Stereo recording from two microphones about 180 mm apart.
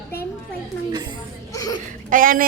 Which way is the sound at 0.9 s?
25° right (ahead or behind).